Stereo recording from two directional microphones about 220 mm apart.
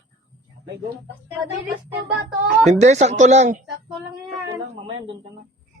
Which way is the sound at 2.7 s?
30° right (ahead or behind).